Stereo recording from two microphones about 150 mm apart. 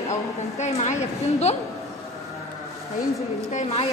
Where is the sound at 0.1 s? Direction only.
45° left (ahead or behind).